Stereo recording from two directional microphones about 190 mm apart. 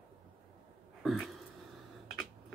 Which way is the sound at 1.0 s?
Centre (ahead or behind).